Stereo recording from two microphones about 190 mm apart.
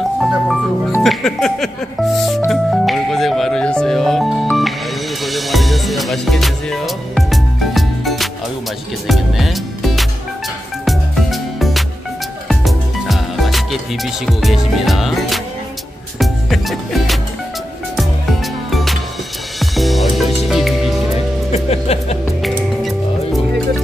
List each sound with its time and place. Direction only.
0.2 s speech: centre (ahead or behind)
2.5 s music: centre (ahead or behind)
9.0 s speech: centre (ahead or behind)
10.9 s music: centre (ahead or behind)
18.7 s music: centre (ahead or behind)
21.5 s speech: 35° left (ahead or behind)